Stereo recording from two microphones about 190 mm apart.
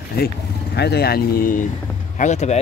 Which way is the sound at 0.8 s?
60° left (ahead or behind).